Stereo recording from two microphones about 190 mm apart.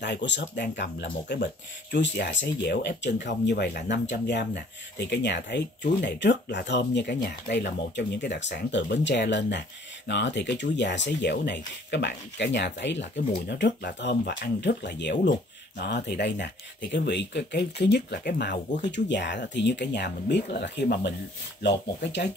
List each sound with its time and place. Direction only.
0.0 s speech: 65° left (ahead or behind)